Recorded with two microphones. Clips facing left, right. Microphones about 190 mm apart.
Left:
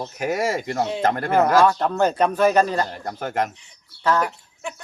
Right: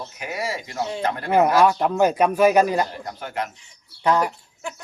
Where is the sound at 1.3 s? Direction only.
15° right (ahead or behind).